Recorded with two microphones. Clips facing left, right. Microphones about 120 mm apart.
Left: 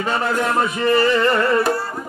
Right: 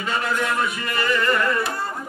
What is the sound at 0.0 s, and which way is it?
Music, 35° left (ahead or behind).